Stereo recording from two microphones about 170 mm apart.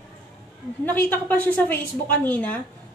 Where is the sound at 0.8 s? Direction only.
10° left (ahead or behind).